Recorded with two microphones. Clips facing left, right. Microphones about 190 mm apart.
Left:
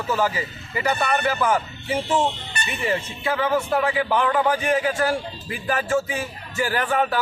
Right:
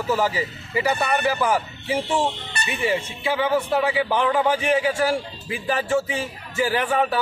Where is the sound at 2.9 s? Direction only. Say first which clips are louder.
Even; 10° right (ahead or behind).